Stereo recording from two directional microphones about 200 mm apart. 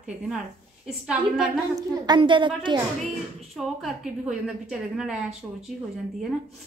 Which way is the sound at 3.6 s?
Centre (ahead or behind).